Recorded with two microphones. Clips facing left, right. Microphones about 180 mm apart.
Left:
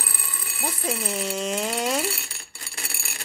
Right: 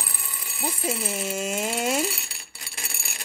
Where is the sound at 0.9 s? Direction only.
5° right (ahead or behind).